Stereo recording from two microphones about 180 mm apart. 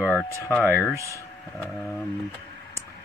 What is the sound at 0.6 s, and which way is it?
Speech, 10° right (ahead or behind).